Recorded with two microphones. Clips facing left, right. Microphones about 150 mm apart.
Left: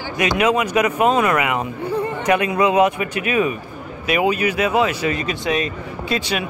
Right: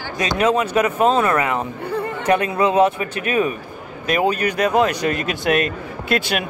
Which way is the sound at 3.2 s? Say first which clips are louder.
Even; 40° right (ahead or behind).